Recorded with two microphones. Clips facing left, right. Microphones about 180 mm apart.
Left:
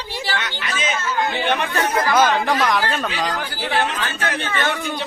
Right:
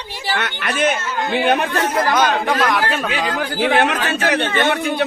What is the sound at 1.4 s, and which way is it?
Speech, 40° right (ahead or behind).